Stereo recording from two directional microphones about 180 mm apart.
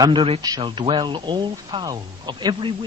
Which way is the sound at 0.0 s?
25° right (ahead or behind).